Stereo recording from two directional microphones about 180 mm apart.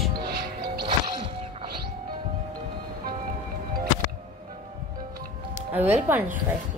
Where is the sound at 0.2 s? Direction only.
60° right (ahead or behind).